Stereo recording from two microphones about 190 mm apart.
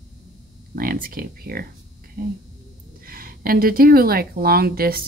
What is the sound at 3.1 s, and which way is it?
Speech, 50° right (ahead or behind).